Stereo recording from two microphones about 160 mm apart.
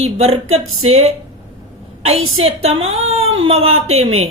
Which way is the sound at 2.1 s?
40° right (ahead or behind).